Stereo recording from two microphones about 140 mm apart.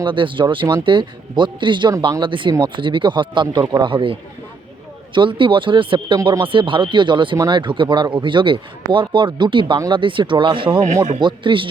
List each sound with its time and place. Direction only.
0.0 s speech: 35° right (ahead or behind)